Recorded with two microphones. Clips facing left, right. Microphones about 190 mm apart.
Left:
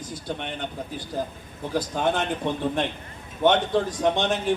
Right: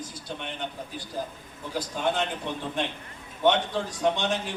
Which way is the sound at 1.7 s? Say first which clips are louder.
Left 4 dB; 50° left (ahead or behind).